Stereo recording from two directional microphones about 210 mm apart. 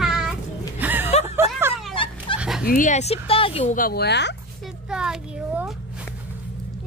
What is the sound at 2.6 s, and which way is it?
Speech, 40° left (ahead or behind).